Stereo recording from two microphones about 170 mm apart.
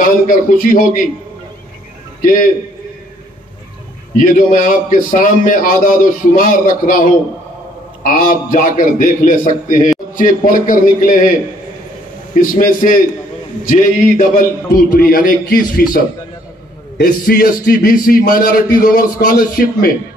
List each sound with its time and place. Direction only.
0.0 s a man's voice: 55° left (ahead or behind)
2.2 s a man's voice: 55° left (ahead or behind)
4.2 s a man's voice: 55° left (ahead or behind)
12.4 s a man's voice: 55° left (ahead or behind)
17.0 s a man's voice: 60° left (ahead or behind)